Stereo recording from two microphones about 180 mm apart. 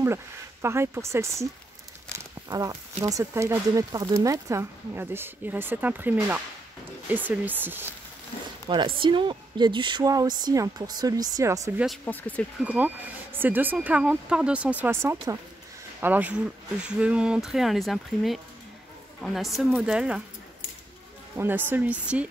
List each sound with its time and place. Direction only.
0.0 s speech: 15° right (ahead or behind)
8.6 s speech: 25° right (ahead or behind)
12.0 s speech: 10° left (ahead or behind)
12.6 s speech: 10° right (ahead or behind)
21.4 s speech: 10° right (ahead or behind)